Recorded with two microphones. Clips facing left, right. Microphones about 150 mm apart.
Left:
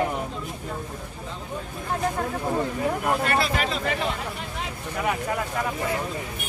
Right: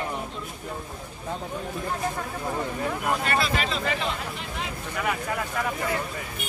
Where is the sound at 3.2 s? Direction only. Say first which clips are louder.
Left 2 dB; 50° left (ahead or behind).